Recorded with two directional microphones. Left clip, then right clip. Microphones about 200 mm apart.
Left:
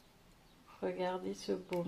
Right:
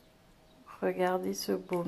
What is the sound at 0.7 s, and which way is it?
Speech, 20° right (ahead or behind).